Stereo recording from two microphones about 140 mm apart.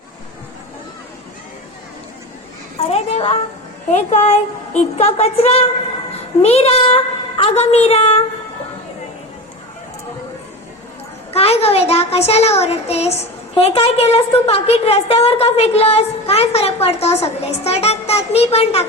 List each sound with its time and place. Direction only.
2.9 s a sound: 45° left (ahead or behind)
3.8 s a child's voice: 50° left (ahead or behind)
11.3 s a child's voice: 45° left (ahead or behind)